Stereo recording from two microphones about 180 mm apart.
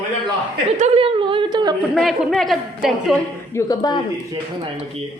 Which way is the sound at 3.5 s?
20° left (ahead or behind).